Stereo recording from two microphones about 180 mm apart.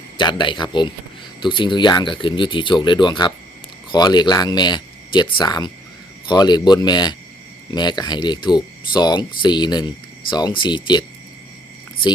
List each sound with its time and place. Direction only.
0.2 s speech: 25° left (ahead or behind)